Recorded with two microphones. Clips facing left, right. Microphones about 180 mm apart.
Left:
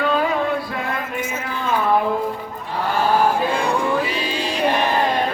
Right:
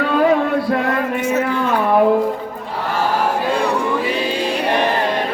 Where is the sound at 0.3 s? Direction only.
65° right (ahead or behind).